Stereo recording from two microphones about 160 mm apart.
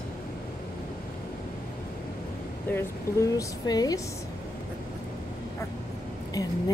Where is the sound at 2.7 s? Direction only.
20° left (ahead or behind).